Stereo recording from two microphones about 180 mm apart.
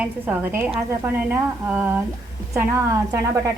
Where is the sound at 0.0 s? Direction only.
10° right (ahead or behind).